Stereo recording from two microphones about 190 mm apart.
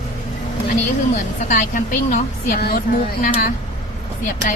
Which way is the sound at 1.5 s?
45° left (ahead or behind).